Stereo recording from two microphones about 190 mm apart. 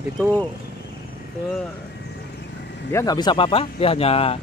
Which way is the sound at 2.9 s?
20° left (ahead or behind).